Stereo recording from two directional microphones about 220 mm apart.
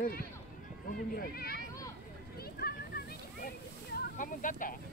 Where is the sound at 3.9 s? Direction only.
35° left (ahead or behind).